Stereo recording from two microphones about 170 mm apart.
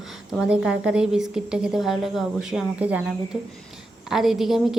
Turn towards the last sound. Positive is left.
turn(degrees=0)  # may be behind; listen again after turning